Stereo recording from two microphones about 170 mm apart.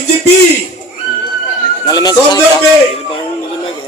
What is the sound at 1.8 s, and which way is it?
Speech, 25° left (ahead or behind).